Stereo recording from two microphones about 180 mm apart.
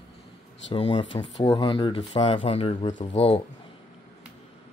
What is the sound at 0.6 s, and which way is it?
Speech, 30° left (ahead or behind).